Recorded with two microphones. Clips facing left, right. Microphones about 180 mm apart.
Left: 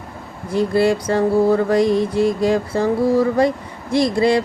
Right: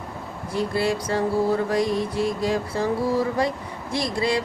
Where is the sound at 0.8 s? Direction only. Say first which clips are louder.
Left 7 dB; 50° left (ahead or behind).